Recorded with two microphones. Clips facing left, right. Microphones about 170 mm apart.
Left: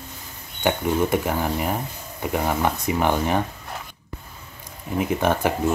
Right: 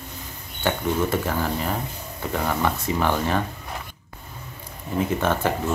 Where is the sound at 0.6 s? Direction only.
15° left (ahead or behind).